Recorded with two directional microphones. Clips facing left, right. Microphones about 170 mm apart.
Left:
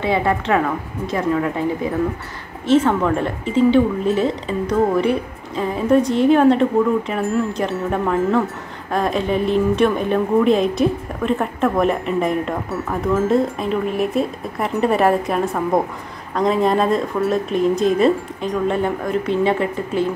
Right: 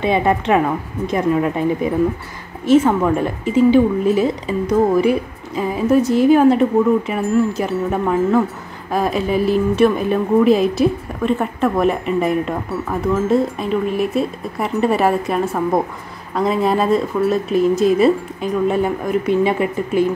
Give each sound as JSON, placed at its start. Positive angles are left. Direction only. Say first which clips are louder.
{"t": 0.0, "sound": "a woman's voice", "louder": "right 2 dB", "side_deg": -20}
{"t": 2.6, "sound": "speech", "louder": "right 2 dB", "side_deg": -10}